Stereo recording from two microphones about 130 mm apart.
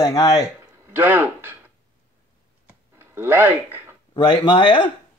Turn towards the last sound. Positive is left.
turn(degrees=40)  # may be behind; listen again after turning